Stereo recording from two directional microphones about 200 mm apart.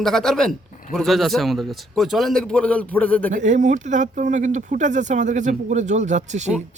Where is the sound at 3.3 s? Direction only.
40° right (ahead or behind).